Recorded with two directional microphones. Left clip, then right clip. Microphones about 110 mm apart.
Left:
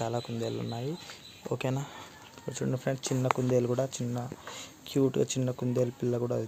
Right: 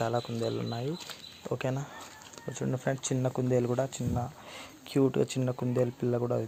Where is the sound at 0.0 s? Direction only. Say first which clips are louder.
Right 2 dB; 5° right (ahead or behind).